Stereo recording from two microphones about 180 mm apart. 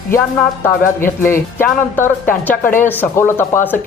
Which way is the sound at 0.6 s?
15° left (ahead or behind).